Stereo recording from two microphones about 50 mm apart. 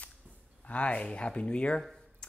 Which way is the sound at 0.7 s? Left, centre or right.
Left.